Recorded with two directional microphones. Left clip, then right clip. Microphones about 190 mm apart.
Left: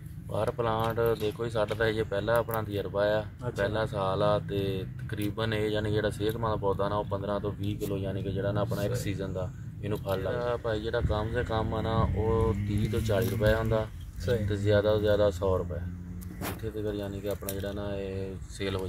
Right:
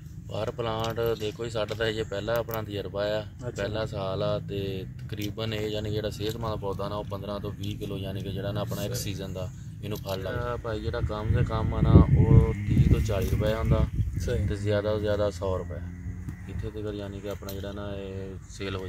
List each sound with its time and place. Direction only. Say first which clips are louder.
0.3 s speech: left 2 dB; 20° left (ahead or behind)
16.8 s speech: left 2 dB; 15° left (ahead or behind)